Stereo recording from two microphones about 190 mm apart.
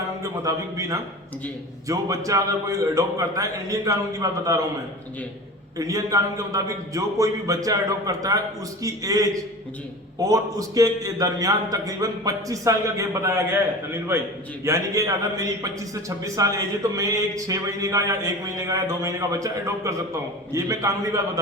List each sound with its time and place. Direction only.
0.2 s a man's voice: 15° right (ahead or behind)
5.7 s a man's voice: 15° right (ahead or behind)